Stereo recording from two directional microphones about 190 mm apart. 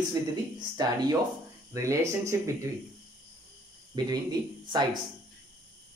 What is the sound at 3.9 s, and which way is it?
Speech, 20° right (ahead or behind).